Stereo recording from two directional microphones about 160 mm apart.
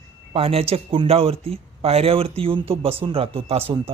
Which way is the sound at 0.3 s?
35° right (ahead or behind).